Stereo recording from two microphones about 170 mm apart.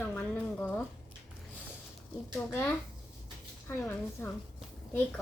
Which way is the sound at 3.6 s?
15° left (ahead or behind).